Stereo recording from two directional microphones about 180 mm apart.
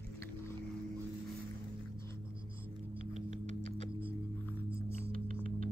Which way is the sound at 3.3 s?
30° left (ahead or behind).